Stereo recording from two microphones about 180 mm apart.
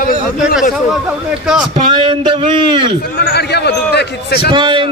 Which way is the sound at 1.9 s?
30° right (ahead or behind).